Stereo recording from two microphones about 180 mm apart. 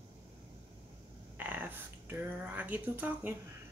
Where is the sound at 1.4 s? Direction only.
10° right (ahead or behind).